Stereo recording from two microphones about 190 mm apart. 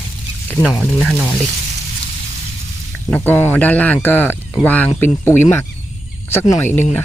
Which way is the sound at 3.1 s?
10° left (ahead or behind).